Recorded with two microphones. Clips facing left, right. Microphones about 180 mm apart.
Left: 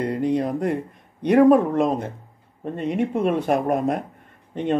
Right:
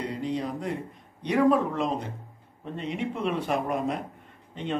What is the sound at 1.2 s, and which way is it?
Speech, 55° left (ahead or behind).